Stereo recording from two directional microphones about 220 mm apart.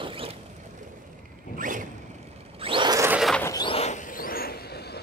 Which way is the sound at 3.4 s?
20° left (ahead or behind).